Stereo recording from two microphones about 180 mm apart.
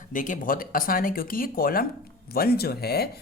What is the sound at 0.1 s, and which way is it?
Speech, 45° left (ahead or behind).